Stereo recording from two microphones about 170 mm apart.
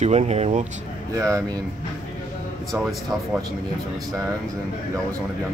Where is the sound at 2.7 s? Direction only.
Centre (ahead or behind).